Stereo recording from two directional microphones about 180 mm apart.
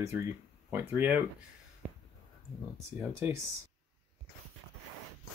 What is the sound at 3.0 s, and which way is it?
Speech, 15° right (ahead or behind).